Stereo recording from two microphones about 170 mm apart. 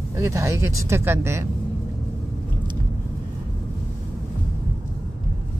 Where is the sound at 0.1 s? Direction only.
15° right (ahead or behind).